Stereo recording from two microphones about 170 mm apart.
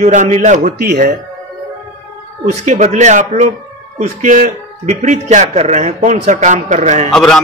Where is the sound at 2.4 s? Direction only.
40° right (ahead or behind).